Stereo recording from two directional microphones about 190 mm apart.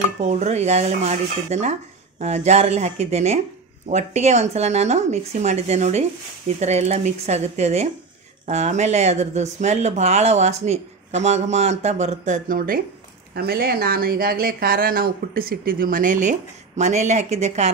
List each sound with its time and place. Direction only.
0.2 s speech: 35° right (ahead or behind)